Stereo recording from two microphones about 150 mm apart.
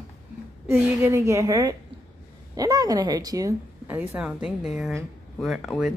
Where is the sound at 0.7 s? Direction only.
15° right (ahead or behind).